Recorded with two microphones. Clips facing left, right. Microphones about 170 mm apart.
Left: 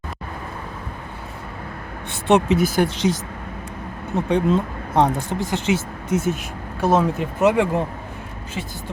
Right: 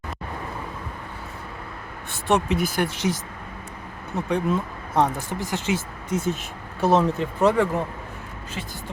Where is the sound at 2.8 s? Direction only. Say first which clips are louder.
Left 5 dB; 10° right (ahead or behind).